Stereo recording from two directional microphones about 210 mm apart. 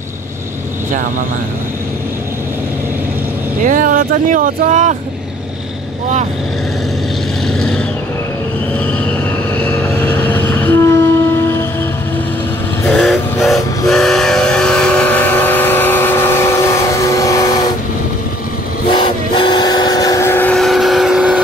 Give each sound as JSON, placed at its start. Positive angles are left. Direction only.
{"t": 3.6, "sound": "speech", "side_deg": -40}
{"t": 7.4, "sound": "vehicle", "side_deg": 5}
{"t": 9.6, "sound": "train", "side_deg": 5}
{"t": 12.8, "sound": "steam whistle", "side_deg": 0}
{"t": 18.9, "sound": "vehicle", "side_deg": 20}